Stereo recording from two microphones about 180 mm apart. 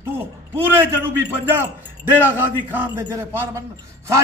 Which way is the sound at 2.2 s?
10° right (ahead or behind).